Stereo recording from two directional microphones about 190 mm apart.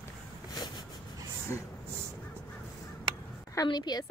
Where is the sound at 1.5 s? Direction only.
15° left (ahead or behind).